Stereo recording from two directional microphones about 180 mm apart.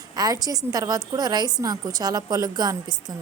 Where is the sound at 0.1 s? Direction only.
20° right (ahead or behind).